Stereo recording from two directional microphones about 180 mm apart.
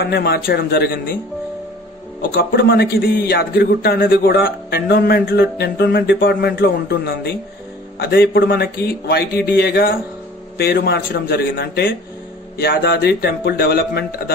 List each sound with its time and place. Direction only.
0.0 s a man's voice: 60° left (ahead or behind)
2.3 s a man's voice: 60° left (ahead or behind)